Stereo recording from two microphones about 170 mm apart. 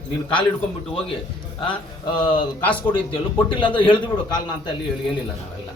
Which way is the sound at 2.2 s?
30° left (ahead or behind).